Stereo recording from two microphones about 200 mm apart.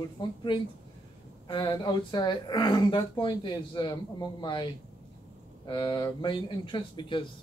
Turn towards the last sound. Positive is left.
turn(degrees=25)  # may be behind; listen again after turning